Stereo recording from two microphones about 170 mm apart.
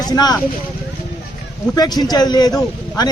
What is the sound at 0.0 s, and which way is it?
Speech, 25° left (ahead or behind).